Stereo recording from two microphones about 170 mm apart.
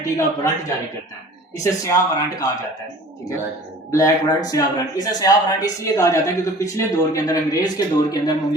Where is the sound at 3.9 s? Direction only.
20° left (ahead or behind).